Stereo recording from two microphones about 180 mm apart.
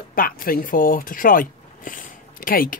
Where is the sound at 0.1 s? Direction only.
50° left (ahead or behind).